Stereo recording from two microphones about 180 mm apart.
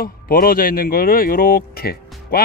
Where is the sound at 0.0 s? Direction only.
55° left (ahead or behind).